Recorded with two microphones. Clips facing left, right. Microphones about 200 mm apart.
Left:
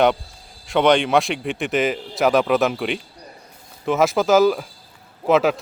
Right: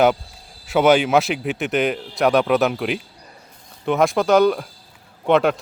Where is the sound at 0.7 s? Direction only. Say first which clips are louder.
Right 1 dB; 5° right (ahead or behind).